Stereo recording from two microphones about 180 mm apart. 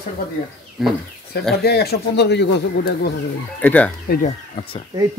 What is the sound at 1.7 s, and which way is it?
Speech, 60° left (ahead or behind).